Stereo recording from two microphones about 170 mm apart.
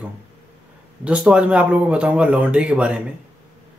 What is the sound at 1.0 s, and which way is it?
Speech, 5° right (ahead or behind).